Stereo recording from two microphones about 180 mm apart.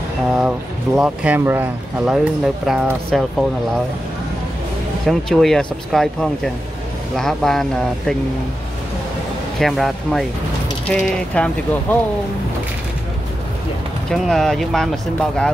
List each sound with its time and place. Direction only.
0.3 s speech: 5° right (ahead or behind)
5.0 s speech: centre (ahead or behind)
9.6 s speech: centre (ahead or behind)
14.1 s speech: centre (ahead or behind)